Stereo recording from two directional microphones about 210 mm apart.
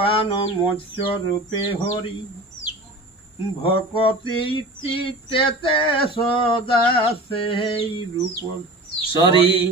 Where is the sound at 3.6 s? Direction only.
25° left (ahead or behind).